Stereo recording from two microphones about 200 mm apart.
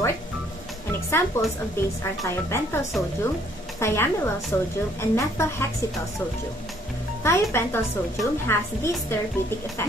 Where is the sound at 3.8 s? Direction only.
10° left (ahead or behind).